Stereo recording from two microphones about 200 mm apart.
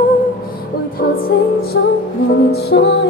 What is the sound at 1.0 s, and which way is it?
Music, 50° left (ahead or behind).